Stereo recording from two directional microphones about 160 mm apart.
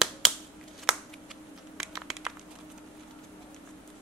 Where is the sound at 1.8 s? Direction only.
Centre (ahead or behind).